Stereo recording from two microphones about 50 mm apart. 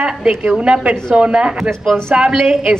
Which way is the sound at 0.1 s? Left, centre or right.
Centre.